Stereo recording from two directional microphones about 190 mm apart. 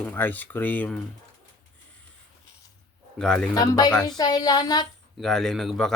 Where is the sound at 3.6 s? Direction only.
20° left (ahead or behind).